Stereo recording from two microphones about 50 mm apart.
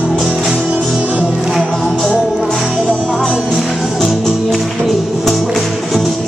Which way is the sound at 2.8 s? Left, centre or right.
Centre.